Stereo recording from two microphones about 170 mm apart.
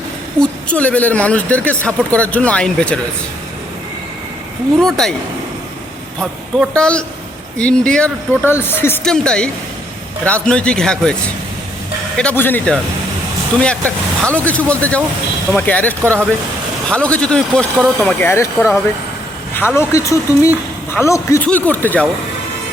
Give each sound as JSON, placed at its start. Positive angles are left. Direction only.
{"t": 0.3, "sound": "speech", "side_deg": 5}
{"t": 4.8, "sound": "speech", "side_deg": 0}
{"t": 6.1, "sound": "speech", "side_deg": 5}